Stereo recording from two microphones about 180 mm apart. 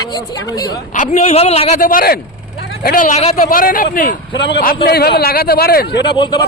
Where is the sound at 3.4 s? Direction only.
50° left (ahead or behind).